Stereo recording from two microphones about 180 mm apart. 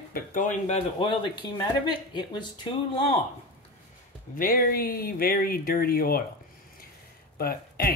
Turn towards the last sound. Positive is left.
turn(degrees=55)  # may be behind; listen again after turning